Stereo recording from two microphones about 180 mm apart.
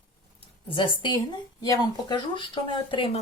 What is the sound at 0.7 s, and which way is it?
Speech, 25° left (ahead or behind).